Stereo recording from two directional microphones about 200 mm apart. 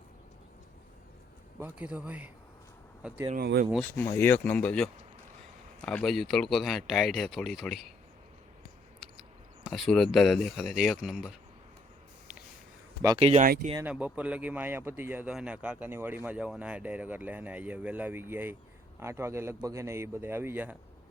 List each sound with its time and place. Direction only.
1.5 s speech: 10° right (ahead or behind)
3.3 s speech: 50° right (ahead or behind)
3.7 s speech: 5° left (ahead or behind)
9.6 s speech: centre (ahead or behind)
13.1 s speech: 30° right (ahead or behind)
13.8 s speech: 5° right (ahead or behind)